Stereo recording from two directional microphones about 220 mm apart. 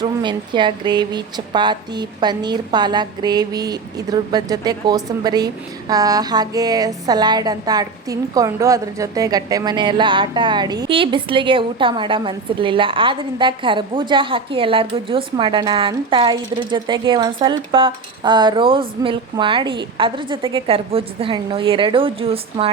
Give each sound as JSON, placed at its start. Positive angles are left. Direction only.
{"t": 0.0, "sound": "speech", "side_deg": -20}